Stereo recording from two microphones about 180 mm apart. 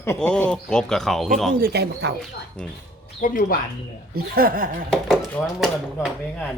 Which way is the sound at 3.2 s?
50° left (ahead or behind).